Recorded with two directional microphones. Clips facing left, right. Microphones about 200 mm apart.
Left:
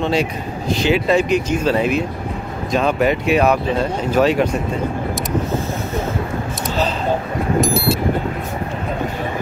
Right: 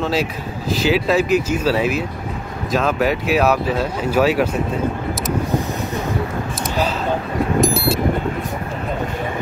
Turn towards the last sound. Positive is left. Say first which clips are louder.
# even
turn(degrees=0)  # may be behind; listen again after turning